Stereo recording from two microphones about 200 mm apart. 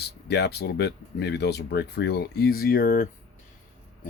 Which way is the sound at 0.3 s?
55° left (ahead or behind).